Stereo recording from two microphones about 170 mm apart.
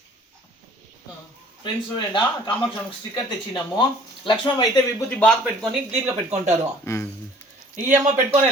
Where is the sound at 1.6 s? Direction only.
25° left (ahead or behind).